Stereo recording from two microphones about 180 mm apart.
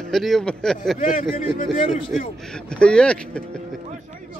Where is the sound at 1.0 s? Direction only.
50° left (ahead or behind).